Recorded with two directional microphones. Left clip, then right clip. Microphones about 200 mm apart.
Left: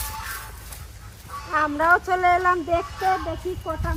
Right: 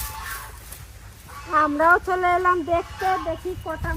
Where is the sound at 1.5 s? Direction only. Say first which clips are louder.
Right 2 dB; 35° right (ahead or behind).